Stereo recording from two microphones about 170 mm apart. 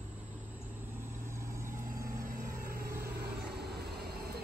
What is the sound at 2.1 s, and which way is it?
Vehicle, 55° right (ahead or behind).